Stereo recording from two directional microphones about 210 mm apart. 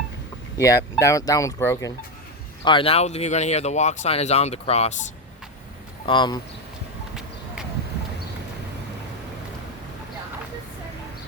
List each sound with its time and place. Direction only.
0.5 s speech: 15° left (ahead or behind)
2.6 s speech: 25° left (ahead or behind)
6.1 s speech: 20° left (ahead or behind)